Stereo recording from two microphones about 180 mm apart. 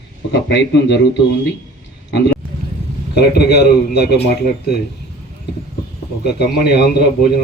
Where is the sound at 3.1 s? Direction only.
65° left (ahead or behind).